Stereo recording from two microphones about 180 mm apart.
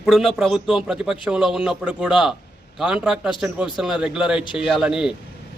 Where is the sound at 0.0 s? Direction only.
Centre (ahead or behind).